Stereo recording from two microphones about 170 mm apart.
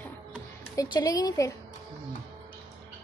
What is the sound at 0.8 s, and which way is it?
Speech, 25° left (ahead or behind).